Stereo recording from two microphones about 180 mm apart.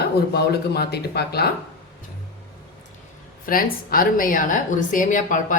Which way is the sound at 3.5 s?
55° left (ahead or behind).